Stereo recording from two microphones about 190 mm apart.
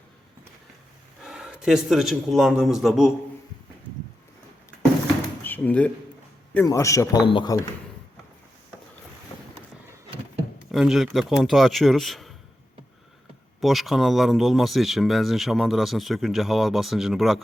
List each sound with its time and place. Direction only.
1.2 s speech: 5° right (ahead or behind)
5.4 s door: 10° left (ahead or behind)
6.5 s a man's voice: 15° left (ahead or behind)
10.7 s speech: centre (ahead or behind)
13.6 s speech: centre (ahead or behind)